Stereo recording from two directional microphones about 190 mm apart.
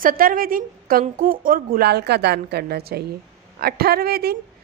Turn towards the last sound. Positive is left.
turn(degrees=-55)  # may be behind; listen again after turning